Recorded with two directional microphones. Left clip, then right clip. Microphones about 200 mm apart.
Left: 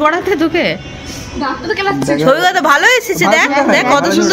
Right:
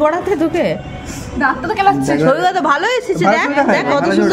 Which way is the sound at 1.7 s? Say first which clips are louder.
Right 2 dB; 30° right (ahead or behind).